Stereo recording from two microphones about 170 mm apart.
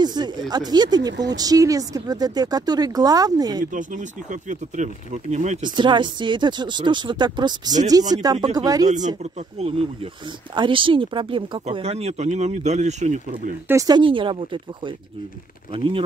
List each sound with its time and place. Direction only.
0.0 s speech: 25° right (ahead or behind)
3.7 s speech: 45° right (ahead or behind)
5.6 s speech: 25° right (ahead or behind)
8.8 s speech: 45° right (ahead or behind)
13.7 s speech: 20° right (ahead or behind)